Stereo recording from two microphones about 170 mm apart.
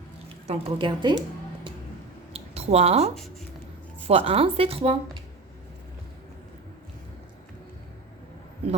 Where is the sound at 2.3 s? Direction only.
35° right (ahead or behind).